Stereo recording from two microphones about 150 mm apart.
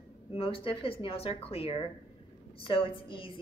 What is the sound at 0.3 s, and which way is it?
A woman's voice, 35° left (ahead or behind).